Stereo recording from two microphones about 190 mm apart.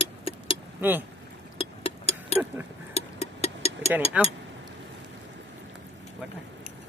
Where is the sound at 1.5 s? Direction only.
30° left (ahead or behind).